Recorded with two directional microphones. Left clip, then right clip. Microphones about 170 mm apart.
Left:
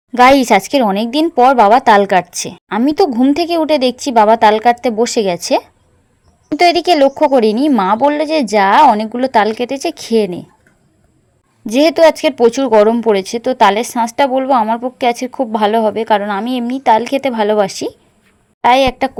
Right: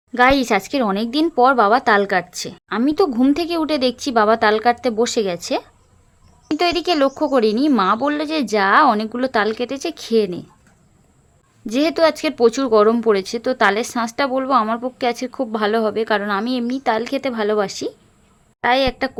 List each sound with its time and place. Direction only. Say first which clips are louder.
0.1 s speech: left 7 dB; 25° left (ahead or behind)
11.6 s speech: left 7 dB; 20° left (ahead or behind)